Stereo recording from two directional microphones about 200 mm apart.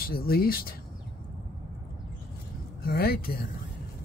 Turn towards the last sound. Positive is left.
turn(degrees=50)  # may be behind; listen again after turning